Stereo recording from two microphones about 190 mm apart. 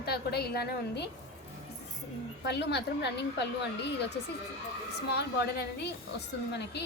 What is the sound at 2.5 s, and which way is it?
Speech, 65° left (ahead or behind).